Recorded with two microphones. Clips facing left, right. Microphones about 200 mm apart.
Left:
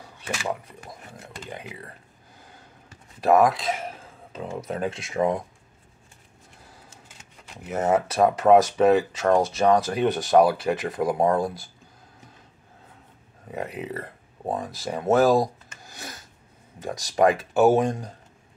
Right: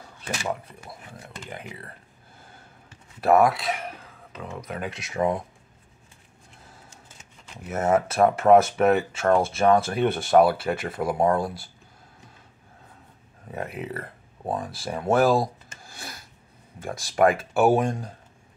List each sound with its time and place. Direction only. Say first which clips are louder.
1.5 s speech: left 1 dB; 15° left (ahead or behind)
3.2 s speech: even; 20° left (ahead or behind)
7.6 s speech: even; 15° left (ahead or behind)
13.5 s speech: left 1 dB; 20° left (ahead or behind)
17.1 s speech: even; 20° left (ahead or behind)